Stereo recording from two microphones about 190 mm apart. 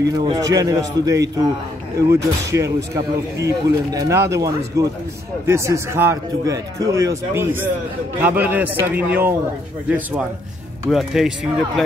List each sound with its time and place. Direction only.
0.1 s a man's voice: 20° right (ahead or behind)
2.5 s a man's voice: 15° right (ahead or behind)